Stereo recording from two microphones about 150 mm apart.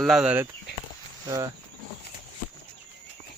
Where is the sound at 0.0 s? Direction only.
5° right (ahead or behind).